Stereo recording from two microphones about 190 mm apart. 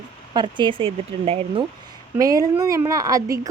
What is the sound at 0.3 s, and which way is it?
Speech, 25° right (ahead or behind).